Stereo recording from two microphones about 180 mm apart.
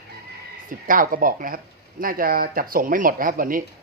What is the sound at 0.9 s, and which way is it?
Speech, 50° right (ahead or behind).